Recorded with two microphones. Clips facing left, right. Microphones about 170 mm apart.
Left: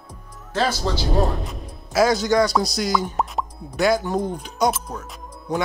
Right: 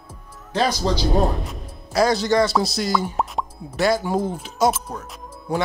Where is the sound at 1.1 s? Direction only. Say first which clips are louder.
Right 1 dB; centre (ahead or behind).